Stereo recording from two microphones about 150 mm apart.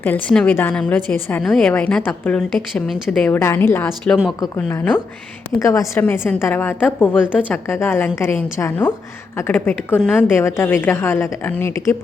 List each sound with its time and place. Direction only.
0.0 s a woman's voice: 10° left (ahead or behind)
3.3 s a woman's voice: 15° left (ahead or behind)